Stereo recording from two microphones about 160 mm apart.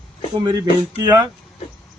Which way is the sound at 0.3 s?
25° right (ahead or behind).